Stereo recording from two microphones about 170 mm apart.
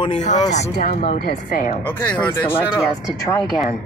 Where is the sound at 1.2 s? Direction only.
55° left (ahead or behind).